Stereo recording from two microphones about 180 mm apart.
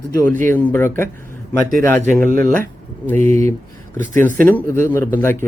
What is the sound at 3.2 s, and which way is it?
Speech, 40° right (ahead or behind).